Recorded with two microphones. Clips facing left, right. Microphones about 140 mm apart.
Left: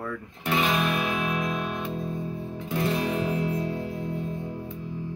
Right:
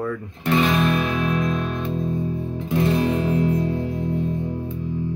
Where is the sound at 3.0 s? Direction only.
10° left (ahead or behind).